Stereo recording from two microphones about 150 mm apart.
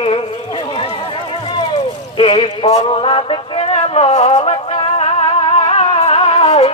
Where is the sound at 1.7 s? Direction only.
35° left (ahead or behind).